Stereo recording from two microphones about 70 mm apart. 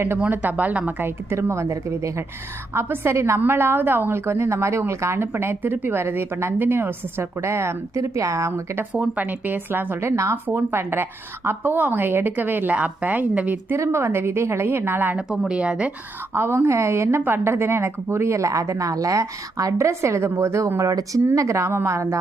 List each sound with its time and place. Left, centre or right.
0.3 s speech: right
1.0 s a woman's voice: right
8.9 s speech: right
10.0 s a woman's voice: right
10.3 s speech: right
13.7 s a woman's voice: right
15.3 s speech: centre
16.3 s a woman's voice: right